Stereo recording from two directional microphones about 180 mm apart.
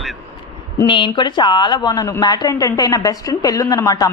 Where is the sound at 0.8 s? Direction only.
25° left (ahead or behind).